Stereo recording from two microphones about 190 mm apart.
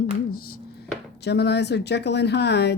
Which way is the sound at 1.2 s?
60° left (ahead or behind).